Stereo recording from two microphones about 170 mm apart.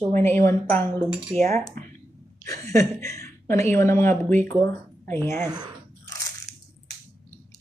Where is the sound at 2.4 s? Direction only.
20° left (ahead or behind).